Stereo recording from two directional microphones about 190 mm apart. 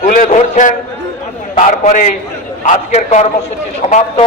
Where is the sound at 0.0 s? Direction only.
40° left (ahead or behind).